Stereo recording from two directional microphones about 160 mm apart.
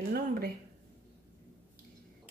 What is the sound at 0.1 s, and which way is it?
Speech, 65° right (ahead or behind).